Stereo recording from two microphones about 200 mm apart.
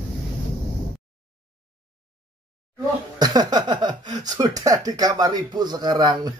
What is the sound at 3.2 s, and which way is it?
Speech, 20° right (ahead or behind).